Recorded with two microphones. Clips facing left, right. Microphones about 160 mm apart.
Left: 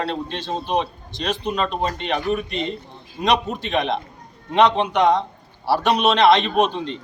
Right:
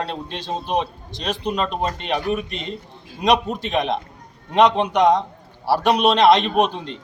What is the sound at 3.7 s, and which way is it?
A man's voice, 10° right (ahead or behind).